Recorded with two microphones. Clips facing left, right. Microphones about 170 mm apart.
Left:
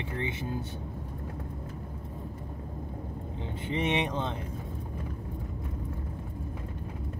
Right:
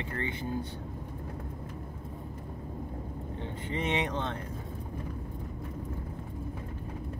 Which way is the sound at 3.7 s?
20° left (ahead or behind).